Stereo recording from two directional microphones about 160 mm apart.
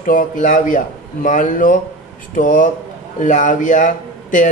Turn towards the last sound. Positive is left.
turn(degrees=55)  # may be behind; listen again after turning